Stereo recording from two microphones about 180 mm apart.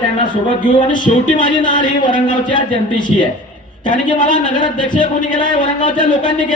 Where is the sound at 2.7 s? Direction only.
25° left (ahead or behind).